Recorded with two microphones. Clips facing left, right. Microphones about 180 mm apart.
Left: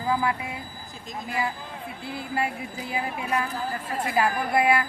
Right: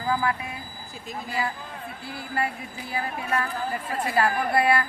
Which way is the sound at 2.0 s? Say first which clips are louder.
Left 1 dB; 20° left (ahead or behind).